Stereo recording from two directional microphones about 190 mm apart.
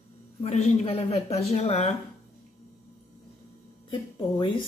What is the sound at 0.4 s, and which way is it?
A man's voice, 35° left (ahead or behind).